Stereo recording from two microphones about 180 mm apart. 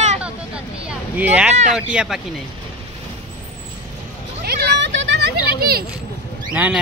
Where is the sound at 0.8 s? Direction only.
10° right (ahead or behind).